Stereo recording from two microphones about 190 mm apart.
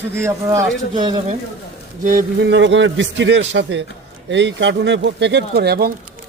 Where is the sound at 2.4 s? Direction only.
70° right (ahead or behind).